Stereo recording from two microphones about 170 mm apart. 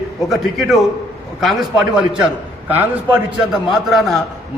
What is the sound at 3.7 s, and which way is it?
Speech, centre (ahead or behind).